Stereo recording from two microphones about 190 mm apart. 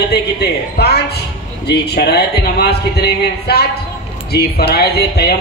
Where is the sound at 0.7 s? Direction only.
60° left (ahead or behind).